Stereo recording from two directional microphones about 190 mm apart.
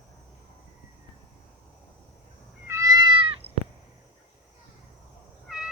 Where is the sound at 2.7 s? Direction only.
20° right (ahead or behind).